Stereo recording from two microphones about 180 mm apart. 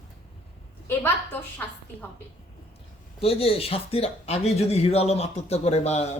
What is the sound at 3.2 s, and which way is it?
Speech, 30° left (ahead or behind).